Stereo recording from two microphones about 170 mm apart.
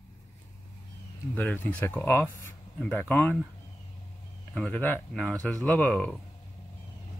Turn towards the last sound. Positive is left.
turn(degrees=5)  # may be behind; listen again after turning